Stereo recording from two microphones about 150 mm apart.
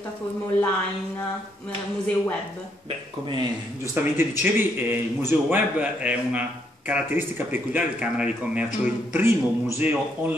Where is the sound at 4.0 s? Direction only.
15° right (ahead or behind).